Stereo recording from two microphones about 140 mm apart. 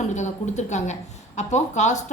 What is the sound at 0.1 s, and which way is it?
A woman's voice, 55° left (ahead or behind).